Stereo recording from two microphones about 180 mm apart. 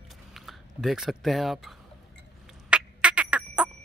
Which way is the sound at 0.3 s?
Centre (ahead or behind).